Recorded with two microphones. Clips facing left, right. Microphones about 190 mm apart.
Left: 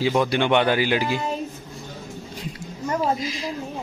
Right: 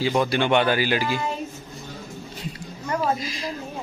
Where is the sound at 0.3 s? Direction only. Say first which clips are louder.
Left 1 dB; 20° left (ahead or behind).